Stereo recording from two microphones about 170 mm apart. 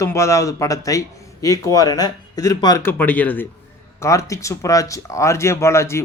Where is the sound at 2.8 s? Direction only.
10° left (ahead or behind).